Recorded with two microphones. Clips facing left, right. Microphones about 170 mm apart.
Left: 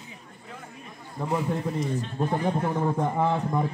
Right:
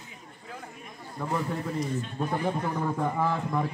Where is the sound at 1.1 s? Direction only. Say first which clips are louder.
Left 3 dB; 15° left (ahead or behind).